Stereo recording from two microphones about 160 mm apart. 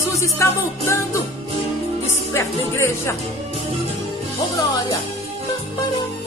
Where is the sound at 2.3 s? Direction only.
15° left (ahead or behind).